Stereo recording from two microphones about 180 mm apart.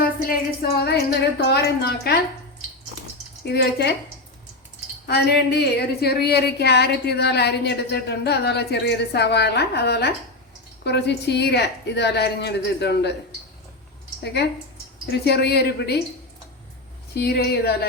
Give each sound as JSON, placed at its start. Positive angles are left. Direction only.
{"t": 0.3, "sound": "a sound", "side_deg": 60}
{"t": 1.4, "sound": "a woman's voice", "side_deg": 65}
{"t": 3.4, "sound": "a woman's voice", "side_deg": 65}
{"t": 5.0, "sound": "a woman's voice", "side_deg": 65}
{"t": 15.0, "sound": "a woman's voice", "side_deg": 65}
{"t": 17.2, "sound": "a woman's voice", "side_deg": 65}